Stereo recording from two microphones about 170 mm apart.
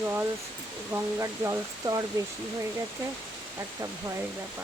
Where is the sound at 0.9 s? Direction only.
15° right (ahead or behind).